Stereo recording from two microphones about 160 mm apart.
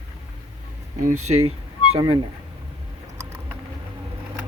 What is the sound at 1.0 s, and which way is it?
Speech, 55° right (ahead or behind).